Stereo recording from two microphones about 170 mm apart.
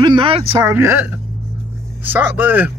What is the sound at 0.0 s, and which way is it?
Speech, 30° right (ahead or behind).